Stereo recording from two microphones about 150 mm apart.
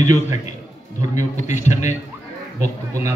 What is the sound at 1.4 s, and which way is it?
Speech, 50° left (ahead or behind).